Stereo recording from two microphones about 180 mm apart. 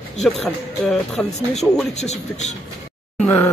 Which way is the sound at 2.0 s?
40° left (ahead or behind).